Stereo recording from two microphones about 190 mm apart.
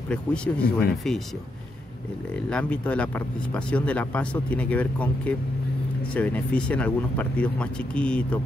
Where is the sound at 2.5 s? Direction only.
5° left (ahead or behind).